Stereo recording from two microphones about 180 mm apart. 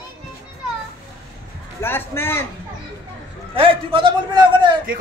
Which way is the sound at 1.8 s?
15° left (ahead or behind).